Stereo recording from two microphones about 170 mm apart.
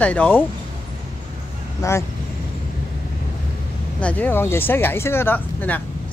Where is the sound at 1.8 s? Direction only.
20° left (ahead or behind).